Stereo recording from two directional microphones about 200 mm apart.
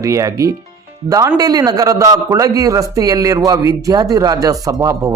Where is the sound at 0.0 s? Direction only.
15° right (ahead or behind).